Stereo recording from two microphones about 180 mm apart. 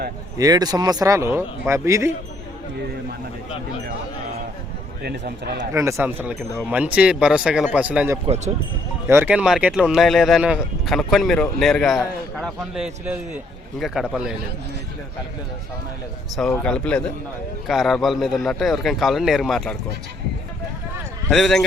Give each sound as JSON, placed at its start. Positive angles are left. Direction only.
{"t": 0.3, "sound": "speech", "side_deg": -20}
{"t": 5.0, "sound": "a man's voice", "side_deg": -70}
{"t": 5.7, "sound": "speech", "side_deg": -15}
{"t": 16.3, "sound": "speech", "side_deg": 5}
{"t": 21.2, "sound": "speech", "side_deg": 0}